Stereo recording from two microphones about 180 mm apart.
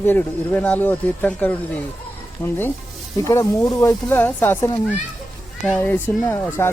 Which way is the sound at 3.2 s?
20° left (ahead or behind).